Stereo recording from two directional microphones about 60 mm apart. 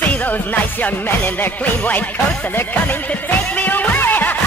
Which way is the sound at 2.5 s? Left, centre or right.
Left.